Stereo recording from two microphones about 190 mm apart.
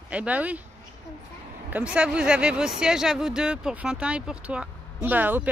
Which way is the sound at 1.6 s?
10° right (ahead or behind).